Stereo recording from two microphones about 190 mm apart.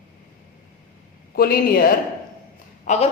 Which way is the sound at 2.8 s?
35° left (ahead or behind).